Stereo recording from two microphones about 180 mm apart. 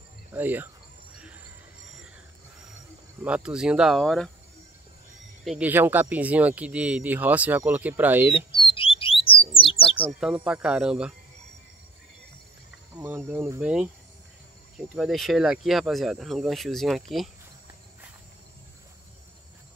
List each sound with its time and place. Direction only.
0.3 s speech: 10° right (ahead or behind)
1.1 s a sound: 5° right (ahead or behind)
3.3 s speech: 5° right (ahead or behind)
5.4 s speech: 5° right (ahead or behind)
8.5 s bird: 30° left (ahead or behind)
10.2 s speech: 5° right (ahead or behind)
12.9 s speech: 10° right (ahead or behind)